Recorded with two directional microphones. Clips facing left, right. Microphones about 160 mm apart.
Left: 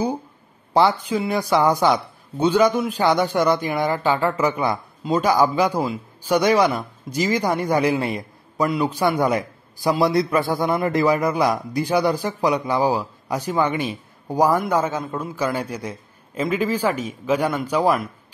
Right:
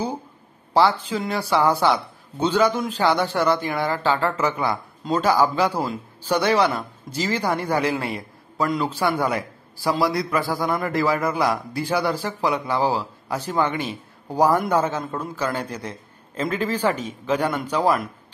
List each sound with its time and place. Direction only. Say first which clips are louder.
0.7 s a man's voice: left 1 dB; 15° left (ahead or behind)